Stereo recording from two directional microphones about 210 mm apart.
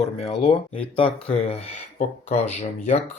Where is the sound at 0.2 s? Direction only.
30° left (ahead or behind).